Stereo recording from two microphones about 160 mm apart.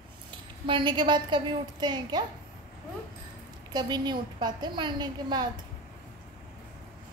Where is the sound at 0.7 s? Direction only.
30° right (ahead or behind).